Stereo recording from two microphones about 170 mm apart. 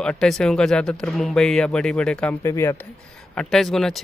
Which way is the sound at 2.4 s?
15° left (ahead or behind).